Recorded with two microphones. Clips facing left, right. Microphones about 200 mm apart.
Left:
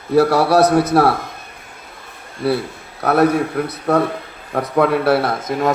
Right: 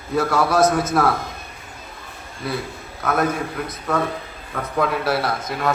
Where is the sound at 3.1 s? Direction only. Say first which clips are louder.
Left 8 dB; 65° left (ahead or behind).